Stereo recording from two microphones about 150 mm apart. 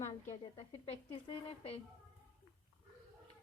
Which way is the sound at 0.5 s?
35° left (ahead or behind).